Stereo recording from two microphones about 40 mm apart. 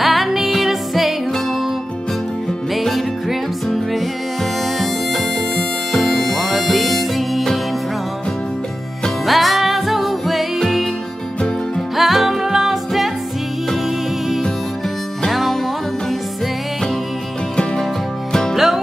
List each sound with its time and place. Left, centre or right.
0.0 s music: centre
2.7 s music: centre
5.6 s music: centre
9.2 s music: centre
12.0 s music: centre
15.2 s music: centre
18.3 s music: centre